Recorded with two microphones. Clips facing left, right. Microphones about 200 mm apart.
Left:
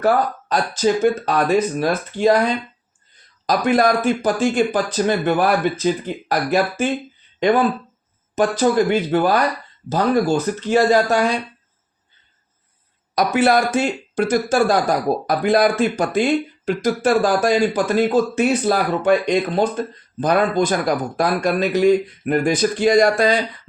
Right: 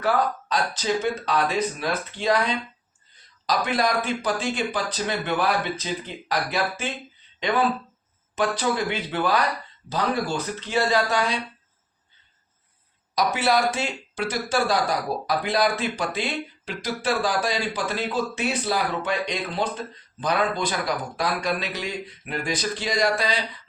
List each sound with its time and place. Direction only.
0.0 s speech: 45° left (ahead or behind)
13.1 s speech: 50° left (ahead or behind)